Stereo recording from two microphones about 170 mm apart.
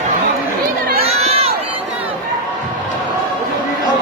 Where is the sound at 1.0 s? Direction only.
35° right (ahead or behind).